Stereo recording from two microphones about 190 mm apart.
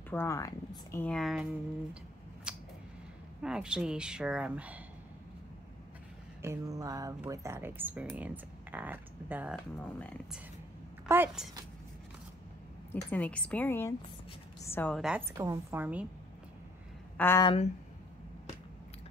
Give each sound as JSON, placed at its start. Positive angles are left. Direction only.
{"t": 0.1, "sound": "a woman's voice", "side_deg": 15}
{"t": 1.0, "sound": "speech", "side_deg": 0}
{"t": 2.5, "sound": "a sound", "side_deg": -5}
{"t": 3.4, "sound": "speech", "side_deg": -5}
{"t": 6.4, "sound": "speech", "side_deg": -15}
{"t": 9.8, "sound": "a woman's voice", "side_deg": 10}
{"t": 11.1, "sound": "speech", "side_deg": -5}
{"t": 12.9, "sound": "a woman's voice", "side_deg": 10}
{"t": 15.0, "sound": "speech", "side_deg": -5}
{"t": 15.3, "sound": "speech", "side_deg": -15}
{"t": 17.2, "sound": "a woman's voice", "side_deg": 15}